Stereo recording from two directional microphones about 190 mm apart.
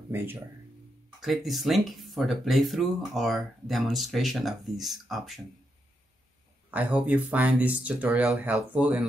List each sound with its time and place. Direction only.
0.1 s speech: 10° right (ahead or behind)
1.2 s speech: centre (ahead or behind)
6.7 s speech: 10° right (ahead or behind)